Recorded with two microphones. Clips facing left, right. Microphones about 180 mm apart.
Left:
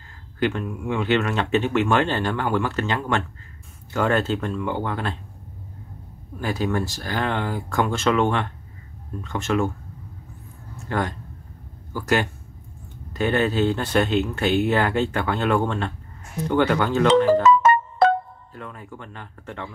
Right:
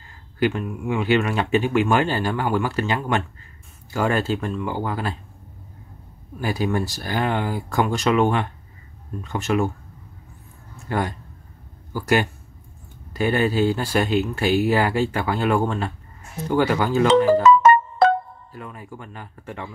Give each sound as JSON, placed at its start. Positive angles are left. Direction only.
{"t": 0.4, "sound": "speech", "side_deg": -10}
{"t": 6.4, "sound": "speech", "side_deg": -10}
{"t": 10.9, "sound": "speech", "side_deg": -10}
{"t": 17.6, "sound": "music", "side_deg": -90}
{"t": 18.5, "sound": "speech", "side_deg": -10}